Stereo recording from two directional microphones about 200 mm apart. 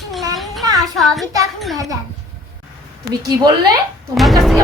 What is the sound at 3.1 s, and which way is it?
Speech, 20° right (ahead or behind).